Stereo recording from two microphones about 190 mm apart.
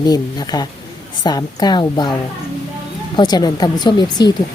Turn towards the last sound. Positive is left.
turn(degrees=20)  # may be behind; listen again after turning